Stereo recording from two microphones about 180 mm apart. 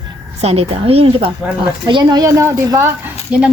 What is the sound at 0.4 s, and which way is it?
A woman's voice, 35° right (ahead or behind).